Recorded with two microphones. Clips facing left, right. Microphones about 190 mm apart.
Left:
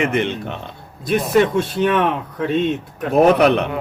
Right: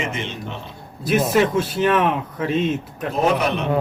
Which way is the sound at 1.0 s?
Centre (ahead or behind).